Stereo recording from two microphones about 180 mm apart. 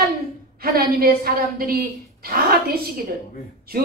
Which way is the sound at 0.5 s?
55° right (ahead or behind).